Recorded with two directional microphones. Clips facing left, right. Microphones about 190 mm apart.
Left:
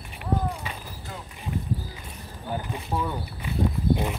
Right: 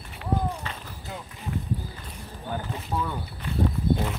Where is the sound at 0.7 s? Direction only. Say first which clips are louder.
Left 1 dB; 10° left (ahead or behind).